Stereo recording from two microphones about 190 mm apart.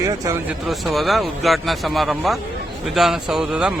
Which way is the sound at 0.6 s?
Centre (ahead or behind).